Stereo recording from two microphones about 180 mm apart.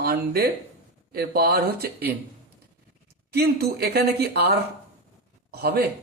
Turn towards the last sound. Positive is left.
turn(degrees=-60)  # may be behind; listen again after turning